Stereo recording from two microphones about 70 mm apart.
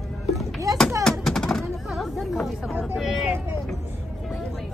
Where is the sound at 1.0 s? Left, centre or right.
Centre.